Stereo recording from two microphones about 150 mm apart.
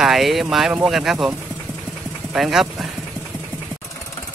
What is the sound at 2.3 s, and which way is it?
Speech, centre (ahead or behind).